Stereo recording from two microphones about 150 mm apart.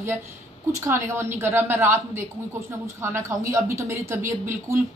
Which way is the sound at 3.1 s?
20° right (ahead or behind).